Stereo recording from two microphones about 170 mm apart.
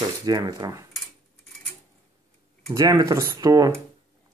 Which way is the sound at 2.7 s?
20° right (ahead or behind).